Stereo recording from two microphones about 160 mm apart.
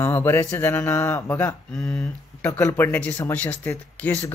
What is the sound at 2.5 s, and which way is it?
Speech, 20° left (ahead or behind).